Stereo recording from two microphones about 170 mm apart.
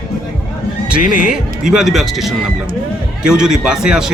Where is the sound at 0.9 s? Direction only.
5° right (ahead or behind).